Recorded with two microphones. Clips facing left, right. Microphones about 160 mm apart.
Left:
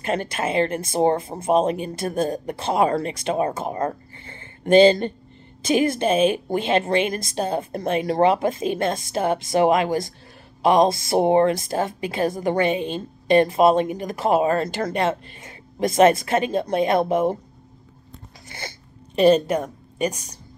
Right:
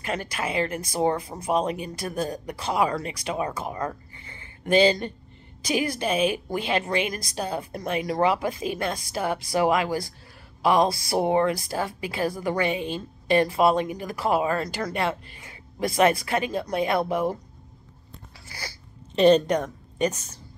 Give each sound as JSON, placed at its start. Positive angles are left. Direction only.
{"t": 0.0, "sound": "a woman's voice", "side_deg": 25}
{"t": 3.7, "sound": "speech", "side_deg": 45}
{"t": 4.6, "sound": "a woman's voice", "side_deg": 25}
{"t": 18.5, "sound": "a sound", "side_deg": 25}
{"t": 19.1, "sound": "a woman's voice", "side_deg": 10}